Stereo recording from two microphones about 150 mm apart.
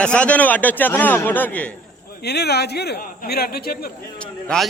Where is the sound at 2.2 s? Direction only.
90° left.